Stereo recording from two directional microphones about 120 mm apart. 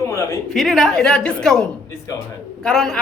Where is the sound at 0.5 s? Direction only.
Centre (ahead or behind).